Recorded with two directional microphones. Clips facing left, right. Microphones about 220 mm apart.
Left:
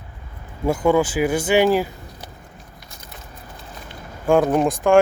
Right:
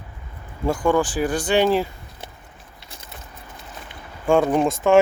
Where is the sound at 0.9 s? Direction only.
10° left (ahead or behind).